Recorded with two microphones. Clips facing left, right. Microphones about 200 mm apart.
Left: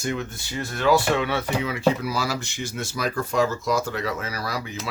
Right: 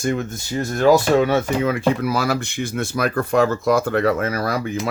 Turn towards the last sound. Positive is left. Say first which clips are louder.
# right 8 dB
turn(degrees=-50)  # may be behind; listen again after turning